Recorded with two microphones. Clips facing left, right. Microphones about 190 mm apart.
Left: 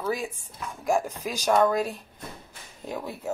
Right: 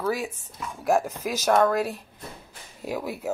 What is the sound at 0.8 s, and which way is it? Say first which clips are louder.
Speech: right 2 dB; 5° right (ahead or behind).